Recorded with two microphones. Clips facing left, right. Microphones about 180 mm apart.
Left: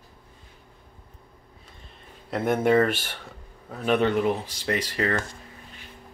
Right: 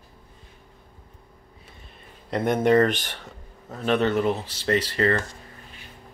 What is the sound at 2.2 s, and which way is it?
Speech, 5° left (ahead or behind).